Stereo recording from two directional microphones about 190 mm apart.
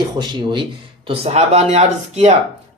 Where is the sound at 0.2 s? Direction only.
25° right (ahead or behind).